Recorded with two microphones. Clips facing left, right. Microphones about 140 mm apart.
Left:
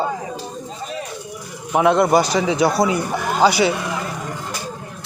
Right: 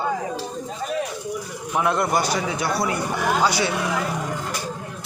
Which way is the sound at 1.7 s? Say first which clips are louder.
Left 7 dB; 90° left.